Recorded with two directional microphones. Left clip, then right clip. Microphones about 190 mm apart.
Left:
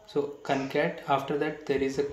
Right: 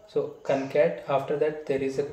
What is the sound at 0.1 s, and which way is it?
Speech, 40° left (ahead or behind).